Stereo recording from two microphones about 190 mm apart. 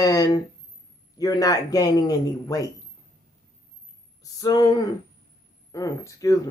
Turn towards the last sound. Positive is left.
turn(degrees=20)  # may be behind; listen again after turning